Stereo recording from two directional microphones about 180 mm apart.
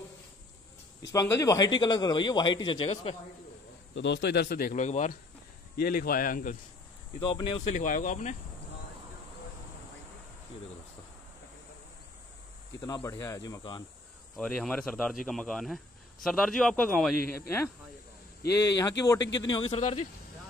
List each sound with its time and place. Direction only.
1.1 s a man's voice: 20° left (ahead or behind)
3.9 s speech: 85° left; by 4.8 s 55° left (ahead or behind)
4.8 s speech: 40° left (ahead or behind)
5.8 s speech: 55° left (ahead or behind)
7.2 s a man's voice: 25° left (ahead or behind)
7.7 s speech: 45° left (ahead or behind)
12.8 s a man's voice: 20° left (ahead or behind)
14.3 s a man's voice: 5° left (ahead or behind)
18.8 s a man's voice: 20° left (ahead or behind)
19.5 s speech: 30° left (ahead or behind)